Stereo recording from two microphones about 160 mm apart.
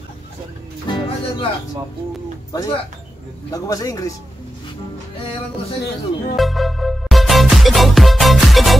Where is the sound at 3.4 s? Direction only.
20° left (ahead or behind).